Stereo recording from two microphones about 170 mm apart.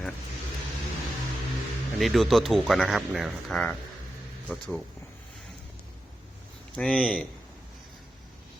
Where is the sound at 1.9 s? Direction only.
Centre (ahead or behind).